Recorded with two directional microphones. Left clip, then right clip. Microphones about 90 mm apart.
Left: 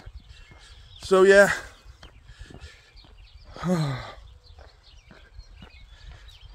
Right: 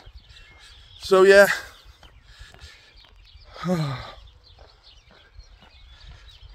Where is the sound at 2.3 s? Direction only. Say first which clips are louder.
Right 2 dB; 25° right (ahead or behind).